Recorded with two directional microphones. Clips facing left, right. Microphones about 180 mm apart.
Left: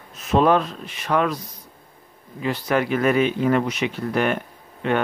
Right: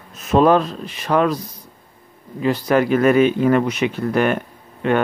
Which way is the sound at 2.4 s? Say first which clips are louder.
Right 5 dB; 40° right (ahead or behind).